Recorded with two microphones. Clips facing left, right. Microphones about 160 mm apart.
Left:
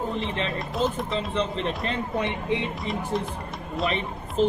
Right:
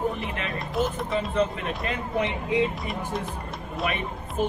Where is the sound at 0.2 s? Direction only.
25° left (ahead or behind).